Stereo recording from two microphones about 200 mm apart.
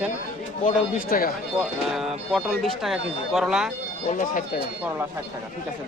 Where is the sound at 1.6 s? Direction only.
Centre (ahead or behind).